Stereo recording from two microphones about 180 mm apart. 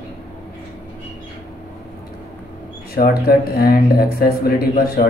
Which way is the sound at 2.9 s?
60° left (ahead or behind).